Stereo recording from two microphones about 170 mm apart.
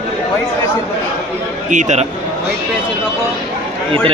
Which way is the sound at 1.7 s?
45° right (ahead or behind).